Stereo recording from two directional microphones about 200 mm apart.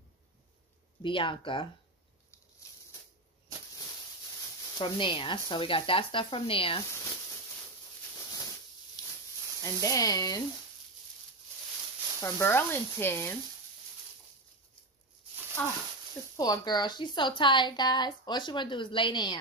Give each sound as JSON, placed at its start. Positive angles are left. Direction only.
{"t": 1.0, "sound": "a woman's voice", "side_deg": 25}
{"t": 4.7, "sound": "a woman's voice", "side_deg": 25}
{"t": 8.2, "sound": "a sound", "side_deg": 15}
{"t": 9.6, "sound": "speech", "side_deg": 15}
{"t": 12.2, "sound": "speech", "side_deg": 10}
{"t": 15.6, "sound": "speech", "side_deg": 5}
{"t": 16.3, "sound": "a woman's voice", "side_deg": 20}